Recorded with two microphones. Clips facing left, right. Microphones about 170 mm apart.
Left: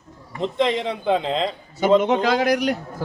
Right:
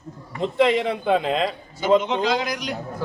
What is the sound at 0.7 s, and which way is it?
Speech, 25° left (ahead or behind).